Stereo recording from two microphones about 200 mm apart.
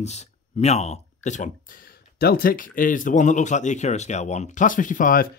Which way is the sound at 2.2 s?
50° left (ahead or behind).